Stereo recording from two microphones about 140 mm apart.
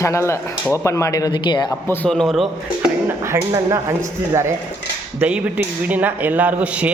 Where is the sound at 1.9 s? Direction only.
10° left (ahead or behind).